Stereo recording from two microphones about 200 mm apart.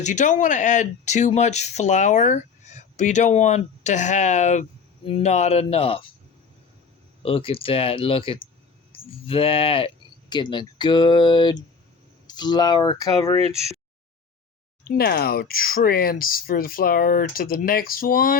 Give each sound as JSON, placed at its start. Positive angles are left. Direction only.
{"t": 0.0, "sound": "speech", "side_deg": 40}
{"t": 7.2, "sound": "speech", "side_deg": 25}
{"t": 13.4, "sound": "speech", "side_deg": -30}
{"t": 14.8, "sound": "speech", "side_deg": 50}